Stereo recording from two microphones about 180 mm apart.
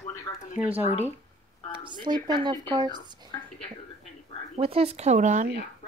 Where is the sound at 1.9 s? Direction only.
25° right (ahead or behind).